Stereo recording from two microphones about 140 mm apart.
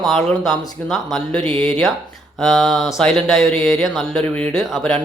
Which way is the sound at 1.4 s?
35° right (ahead or behind).